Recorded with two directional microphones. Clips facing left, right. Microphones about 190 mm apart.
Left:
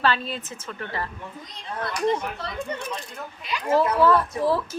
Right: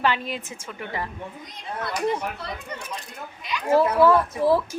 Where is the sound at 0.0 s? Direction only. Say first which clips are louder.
Even; 15° right (ahead or behind).